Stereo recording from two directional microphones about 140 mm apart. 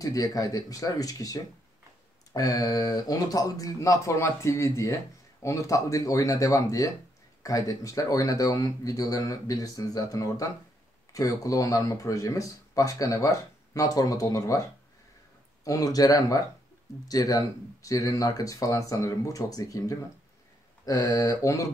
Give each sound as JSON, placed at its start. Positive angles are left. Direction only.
{"t": 0.0, "sound": "speech", "side_deg": 25}